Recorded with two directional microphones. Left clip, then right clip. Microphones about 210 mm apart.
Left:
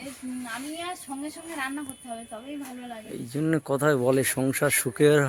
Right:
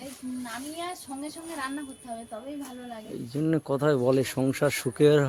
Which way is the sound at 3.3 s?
5° right (ahead or behind).